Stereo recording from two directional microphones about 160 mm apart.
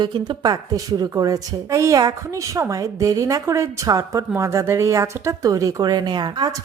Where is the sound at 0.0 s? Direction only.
25° right (ahead or behind).